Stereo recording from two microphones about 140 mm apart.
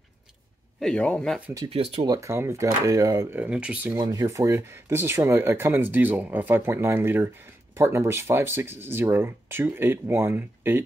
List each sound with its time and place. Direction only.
0.7 s speech: 5° left (ahead or behind)
1.7 s speech: 40° right (ahead or behind)
2.0 s speech: 20° right (ahead or behind)
3.3 s speech: 10° right (ahead or behind)
4.0 s speech: 25° right (ahead or behind)